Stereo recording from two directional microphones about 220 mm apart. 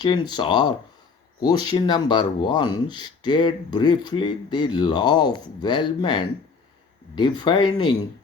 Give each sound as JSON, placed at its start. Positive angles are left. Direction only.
{"t": 0.0, "sound": "speech", "side_deg": 20}